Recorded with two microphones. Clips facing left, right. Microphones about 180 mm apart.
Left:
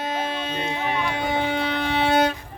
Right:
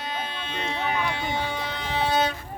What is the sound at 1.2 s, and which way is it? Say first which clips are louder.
Music: left 5 dB; 55° left (ahead or behind).